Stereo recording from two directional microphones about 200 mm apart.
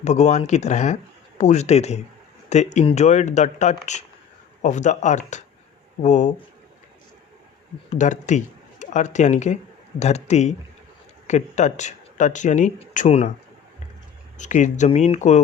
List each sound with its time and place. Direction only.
0.0 s speech: 35° left (ahead or behind)
7.9 s speech: 35° left (ahead or behind)
14.3 s speech: 35° left (ahead or behind)